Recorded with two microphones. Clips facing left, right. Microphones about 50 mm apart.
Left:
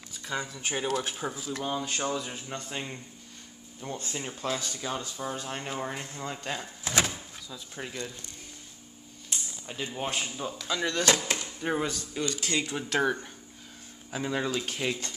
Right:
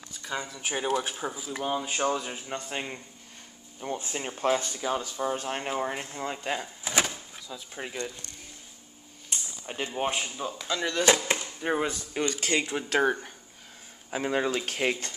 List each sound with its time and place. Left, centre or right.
0.1 s speech: centre; by 4.3 s right
4.4 s speech: right
4.7 s speech: centre
5.3 s speech: right
5.6 s speech: centre
6.6 s speech: centre
9.7 s speech: right
10.0 s speech: centre
11.3 s a sound: right
11.6 s speech: centre
11.9 s speech: right
12.6 s speech: right
14.7 s speech: right